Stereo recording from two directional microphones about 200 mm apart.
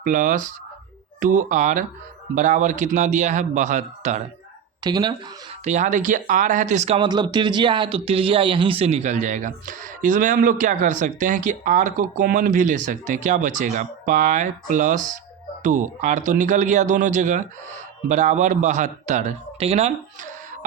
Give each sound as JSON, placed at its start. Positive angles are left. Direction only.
{"t": 0.0, "sound": "speech", "side_deg": -40}
{"t": 4.8, "sound": "speech", "side_deg": -20}
{"t": 5.6, "sound": "a man's voice", "side_deg": -35}